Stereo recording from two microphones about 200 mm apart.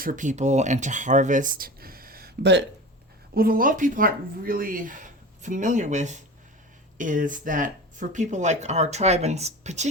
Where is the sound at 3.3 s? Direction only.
45° right (ahead or behind).